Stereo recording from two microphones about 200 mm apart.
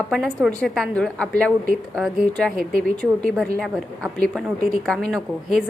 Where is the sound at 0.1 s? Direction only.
Centre (ahead or behind).